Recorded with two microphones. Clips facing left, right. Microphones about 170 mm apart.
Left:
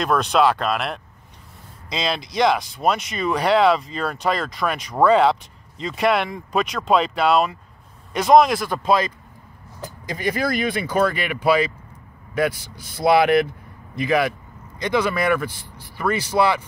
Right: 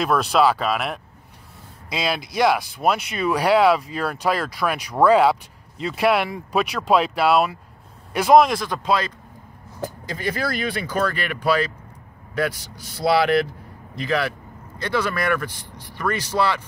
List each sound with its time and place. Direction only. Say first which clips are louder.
0.0 s speech: even; 5° right (ahead or behind); by 11.7 s 15° left (ahead or behind)
12.8 s speech: left 3 dB; 55° left (ahead or behind)
13.2 s speech: left 2 dB; 15° left (ahead or behind)